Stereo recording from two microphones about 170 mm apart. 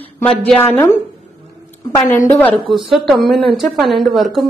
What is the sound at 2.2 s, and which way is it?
Speech, 10° left (ahead or behind).